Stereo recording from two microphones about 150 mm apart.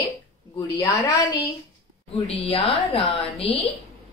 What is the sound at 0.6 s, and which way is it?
Speech, 25° left (ahead or behind).